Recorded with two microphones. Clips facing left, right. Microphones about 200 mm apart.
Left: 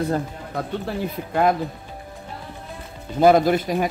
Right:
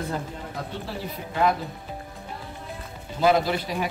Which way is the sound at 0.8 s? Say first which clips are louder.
Left 6 dB; 55° left (ahead or behind).